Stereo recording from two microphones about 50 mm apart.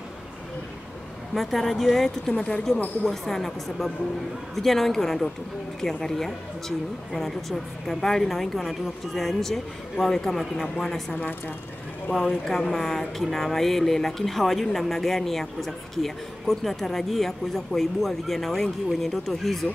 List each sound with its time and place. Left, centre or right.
1.3 s speech: centre
11.1 s speech: left
12.1 s speech: centre